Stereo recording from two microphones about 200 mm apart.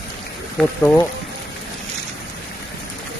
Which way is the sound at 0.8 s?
10° left (ahead or behind).